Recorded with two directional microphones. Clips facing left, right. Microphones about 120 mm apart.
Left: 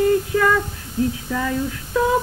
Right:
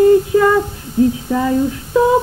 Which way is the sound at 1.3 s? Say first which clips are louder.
Right 7 dB; 25° right (ahead or behind).